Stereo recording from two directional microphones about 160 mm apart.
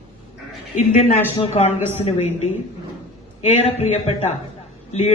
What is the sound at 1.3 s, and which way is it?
A man's voice, 40° left (ahead or behind).